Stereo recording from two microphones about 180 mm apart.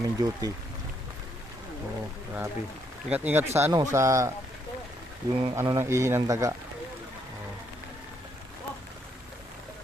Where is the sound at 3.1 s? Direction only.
10° right (ahead or behind).